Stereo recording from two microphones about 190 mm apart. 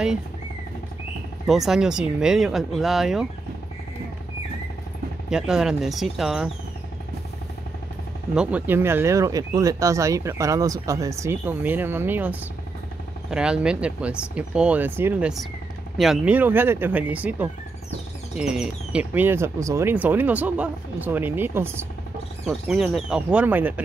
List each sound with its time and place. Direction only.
1.5 s speech: centre (ahead or behind)
5.3 s speech: 5° right (ahead or behind)
8.4 s speech: 5° right (ahead or behind)
22.4 s speech: centre (ahead or behind)